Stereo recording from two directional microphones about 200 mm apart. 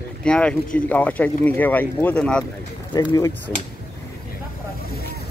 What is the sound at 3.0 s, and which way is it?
Speech, 15° left (ahead or behind).